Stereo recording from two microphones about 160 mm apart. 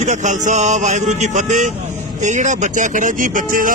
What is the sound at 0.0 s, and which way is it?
Speech, 50° right (ahead or behind).